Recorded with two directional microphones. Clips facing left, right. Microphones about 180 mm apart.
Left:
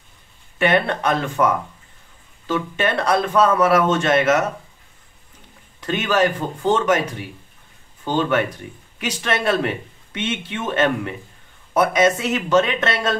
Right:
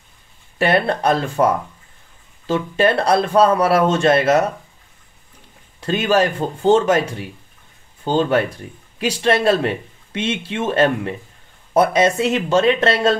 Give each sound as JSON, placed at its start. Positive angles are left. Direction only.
{"t": 0.6, "sound": "a man's voice", "side_deg": -35}
{"t": 5.8, "sound": "a man's voice", "side_deg": -30}
{"t": 8.0, "sound": "a man's voice", "side_deg": -30}